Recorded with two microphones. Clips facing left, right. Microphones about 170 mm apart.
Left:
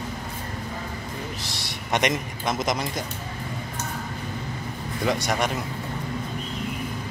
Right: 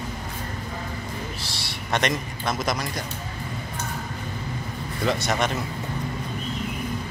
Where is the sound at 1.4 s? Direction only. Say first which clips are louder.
Even; 20° left (ahead or behind).